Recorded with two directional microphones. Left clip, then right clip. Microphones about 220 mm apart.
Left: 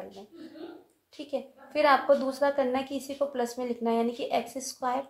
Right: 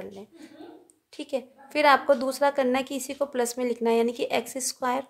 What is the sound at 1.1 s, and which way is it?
A woman's voice, 45° right (ahead or behind).